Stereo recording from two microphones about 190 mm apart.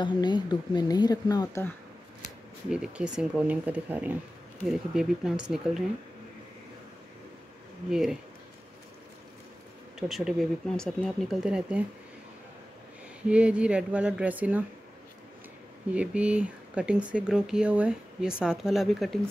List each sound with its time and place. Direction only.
0.0 s speech: 20° left (ahead or behind)
2.7 s speech: 5° right (ahead or behind)
7.9 s speech: centre (ahead or behind)
9.9 s speech: centre (ahead or behind)
13.3 s speech: 5° right (ahead or behind)
15.9 s speech: 5° right (ahead or behind)